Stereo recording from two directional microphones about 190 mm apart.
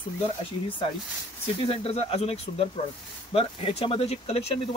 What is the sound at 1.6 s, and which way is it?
Speech, 30° left (ahead or behind).